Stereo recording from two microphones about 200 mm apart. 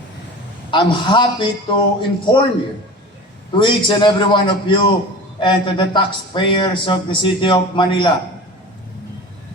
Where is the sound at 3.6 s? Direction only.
25° left (ahead or behind).